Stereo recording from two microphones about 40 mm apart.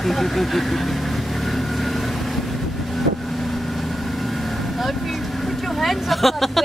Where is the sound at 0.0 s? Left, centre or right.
Centre.